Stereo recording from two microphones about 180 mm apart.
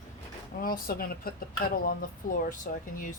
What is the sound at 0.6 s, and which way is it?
Speech, 50° left (ahead or behind).